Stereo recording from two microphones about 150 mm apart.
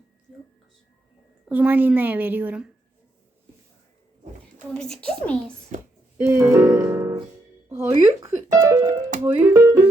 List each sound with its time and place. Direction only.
1.5 s a woman's voice: 10° right (ahead or behind)
4.7 s a child's voice: 5° left (ahead or behind)
5.7 s a woman's voice: 55° right (ahead or behind)
6.1 s a woman's voice: 15° right (ahead or behind)
8.9 s speech: 60° right (ahead or behind)
9.2 s a woman's voice: 15° right (ahead or behind)